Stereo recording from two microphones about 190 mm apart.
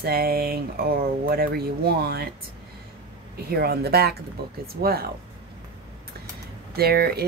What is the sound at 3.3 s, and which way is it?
Speech, 55° right (ahead or behind).